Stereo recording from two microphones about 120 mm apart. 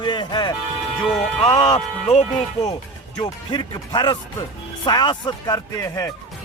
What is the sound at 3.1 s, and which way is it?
Speech, 35° left (ahead or behind).